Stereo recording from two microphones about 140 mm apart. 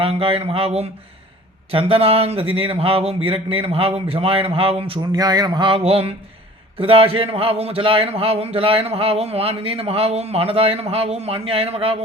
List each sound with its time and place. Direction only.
0.0 s speech: 45° right (ahead or behind)
5.1 s a sound: 30° right (ahead or behind); by 6.1 s 45° right (ahead or behind)
6.7 s speech: 40° right (ahead or behind)